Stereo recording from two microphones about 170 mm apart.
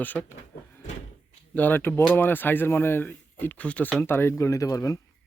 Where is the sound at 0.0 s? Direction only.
10° left (ahead or behind).